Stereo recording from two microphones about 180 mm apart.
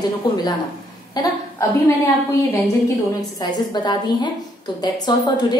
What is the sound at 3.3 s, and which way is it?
A woman's voice, 20° left (ahead or behind).